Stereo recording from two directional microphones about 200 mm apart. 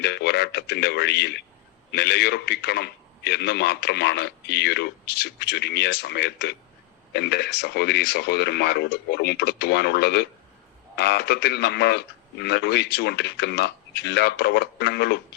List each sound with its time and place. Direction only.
0.0 s a man's voice: 55° left (ahead or behind)